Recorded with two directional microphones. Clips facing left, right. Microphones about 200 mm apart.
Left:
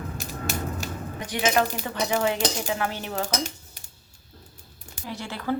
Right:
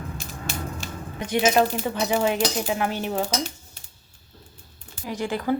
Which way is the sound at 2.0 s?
15° right (ahead or behind).